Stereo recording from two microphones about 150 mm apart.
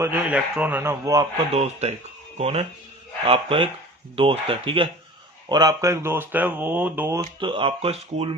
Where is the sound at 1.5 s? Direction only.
45° right (ahead or behind).